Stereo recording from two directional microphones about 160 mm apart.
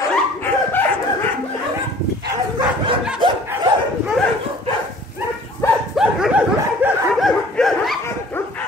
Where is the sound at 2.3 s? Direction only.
25° right (ahead or behind).